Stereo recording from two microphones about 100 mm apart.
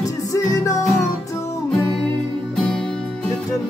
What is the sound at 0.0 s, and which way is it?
Music, 35° left (ahead or behind).